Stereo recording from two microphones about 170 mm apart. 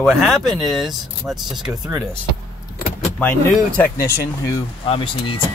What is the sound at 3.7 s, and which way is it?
Speech, 10° left (ahead or behind).